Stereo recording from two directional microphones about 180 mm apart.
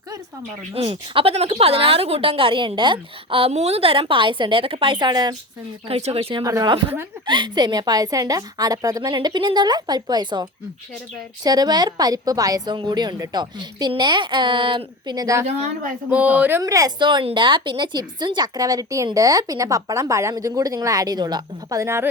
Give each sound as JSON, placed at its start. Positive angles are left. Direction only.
{"t": 0.7, "sound": "a woman's voice", "side_deg": -30}
{"t": 5.9, "sound": "a woman's voice", "side_deg": -35}
{"t": 6.4, "sound": "speech", "side_deg": -20}
{"t": 16.0, "sound": "speech", "side_deg": -10}